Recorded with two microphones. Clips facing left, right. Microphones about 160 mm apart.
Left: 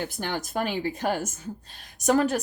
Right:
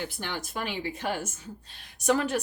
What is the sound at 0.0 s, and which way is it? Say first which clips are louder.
A woman's voice: left 4 dB; 45° left (ahead or behind).